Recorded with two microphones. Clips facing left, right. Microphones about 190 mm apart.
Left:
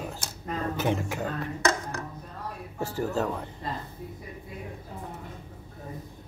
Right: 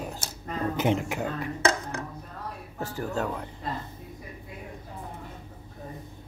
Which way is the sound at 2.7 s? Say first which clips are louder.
Left 2 dB; centre (ahead or behind).